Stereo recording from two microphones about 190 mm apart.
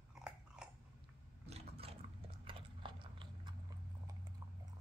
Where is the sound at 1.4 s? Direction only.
30° right (ahead or behind).